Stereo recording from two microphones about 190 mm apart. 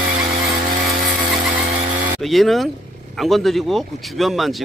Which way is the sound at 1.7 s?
45° right (ahead or behind).